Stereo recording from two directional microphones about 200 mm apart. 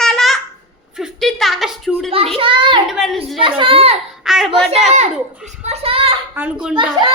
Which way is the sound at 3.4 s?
25° right (ahead or behind).